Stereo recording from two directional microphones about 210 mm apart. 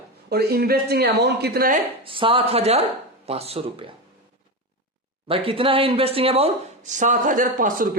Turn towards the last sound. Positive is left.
turn(degrees=-40)  # may be behind; listen again after turning